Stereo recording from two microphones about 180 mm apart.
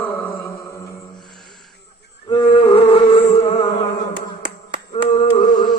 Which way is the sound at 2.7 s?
35° left (ahead or behind).